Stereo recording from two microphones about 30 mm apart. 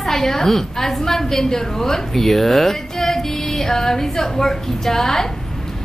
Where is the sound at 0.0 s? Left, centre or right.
Centre.